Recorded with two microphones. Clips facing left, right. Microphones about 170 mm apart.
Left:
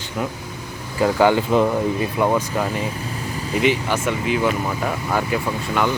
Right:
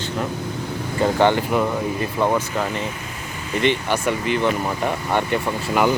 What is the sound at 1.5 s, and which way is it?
Speech, 20° left (ahead or behind).